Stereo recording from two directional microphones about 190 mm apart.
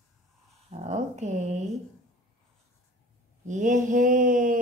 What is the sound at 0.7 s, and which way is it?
Mantra, 35° right (ahead or behind).